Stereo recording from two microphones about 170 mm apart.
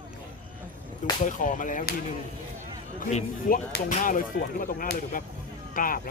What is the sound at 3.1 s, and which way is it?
Speech, 50° left (ahead or behind).